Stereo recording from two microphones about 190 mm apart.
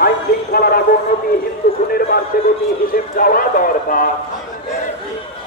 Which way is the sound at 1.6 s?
55° left (ahead or behind).